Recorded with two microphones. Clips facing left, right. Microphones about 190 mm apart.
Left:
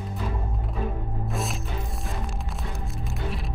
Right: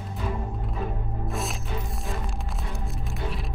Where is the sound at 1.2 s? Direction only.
Centre (ahead or behind).